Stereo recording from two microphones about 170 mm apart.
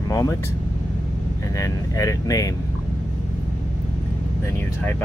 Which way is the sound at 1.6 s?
20° left (ahead or behind).